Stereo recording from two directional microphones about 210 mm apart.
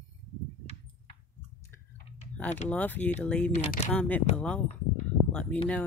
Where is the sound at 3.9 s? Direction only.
5° left (ahead or behind).